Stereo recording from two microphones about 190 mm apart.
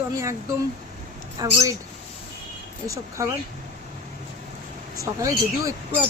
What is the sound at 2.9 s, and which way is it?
Speech, 15° right (ahead or behind).